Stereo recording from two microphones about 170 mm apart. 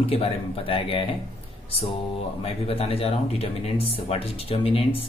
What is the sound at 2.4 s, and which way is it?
Speech, 35° left (ahead or behind).